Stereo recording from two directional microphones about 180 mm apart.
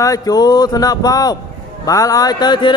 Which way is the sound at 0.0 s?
20° left (ahead or behind).